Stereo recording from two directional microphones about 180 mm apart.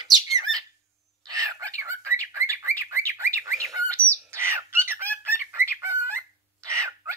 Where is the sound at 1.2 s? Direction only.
20° right (ahead or behind).